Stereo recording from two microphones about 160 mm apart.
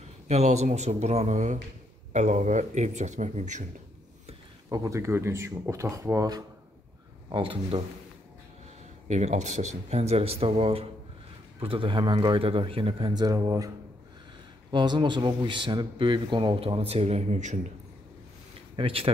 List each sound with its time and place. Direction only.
0.3 s a man's voice: 45° right (ahead or behind)
4.6 s speech: 20° right (ahead or behind)
7.2 s a man's voice: 30° right (ahead or behind)
9.0 s a man's voice: 45° right (ahead or behind); by 13.7 s 20° right (ahead or behind)
14.7 s speech: 30° right (ahead or behind); by 17.6 s 45° right (ahead or behind)
18.8 s a man's voice: 35° right (ahead or behind)